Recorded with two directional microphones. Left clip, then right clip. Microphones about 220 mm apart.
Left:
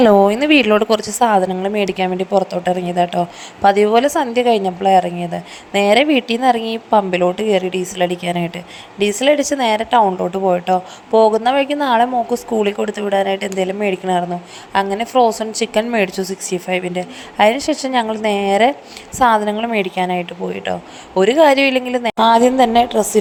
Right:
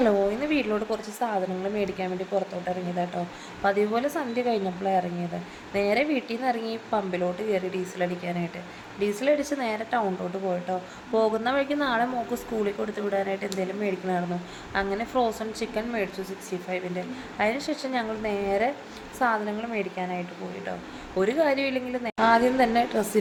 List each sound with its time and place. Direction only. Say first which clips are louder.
0.0 s a woman's voice: left 12 dB; 40° left (ahead or behind)